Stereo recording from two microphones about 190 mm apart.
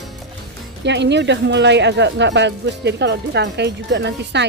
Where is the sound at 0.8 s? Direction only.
65° right (ahead or behind).